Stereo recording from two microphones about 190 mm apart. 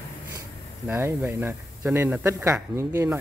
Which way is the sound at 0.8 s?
15° right (ahead or behind).